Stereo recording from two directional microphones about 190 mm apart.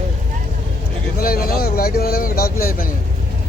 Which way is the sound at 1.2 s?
50° left (ahead or behind).